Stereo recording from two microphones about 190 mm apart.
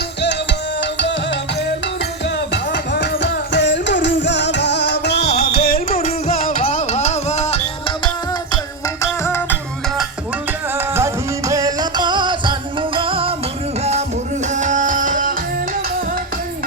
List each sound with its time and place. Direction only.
0.8 s music: 65° left (ahead or behind)
2.5 s music: 65° left (ahead or behind)
6.0 s music: 35° left (ahead or behind)
9.0 s music: 15° left (ahead or behind)
10.8 s music: 15° right (ahead or behind); by 13.3 s 30° right (ahead or behind)
14.5 s music: 40° right (ahead or behind)